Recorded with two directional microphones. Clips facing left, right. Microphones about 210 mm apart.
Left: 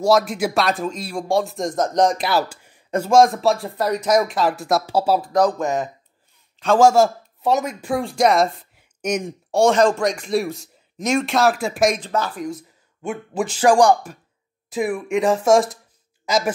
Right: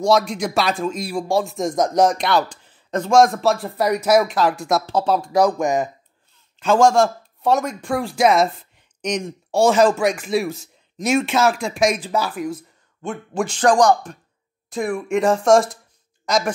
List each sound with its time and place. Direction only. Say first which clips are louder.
0.0 s speech: left 1 dB; 5° left (ahead or behind)
2.1 s speech: right 1 dB; 5° left (ahead or behind)
5.3 s speech: right 4 dB; 10° right (ahead or behind)
6.6 s speech: left 1 dB; centre (ahead or behind)
9.6 s speech: right 1 dB; 5° right (ahead or behind)
13.0 s speech: even; 5° left (ahead or behind)